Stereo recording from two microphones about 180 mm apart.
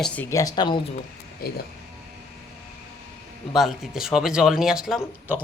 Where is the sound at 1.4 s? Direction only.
55° left (ahead or behind).